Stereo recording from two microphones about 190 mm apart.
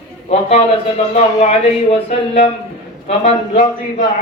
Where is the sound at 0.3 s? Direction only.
35° left (ahead or behind).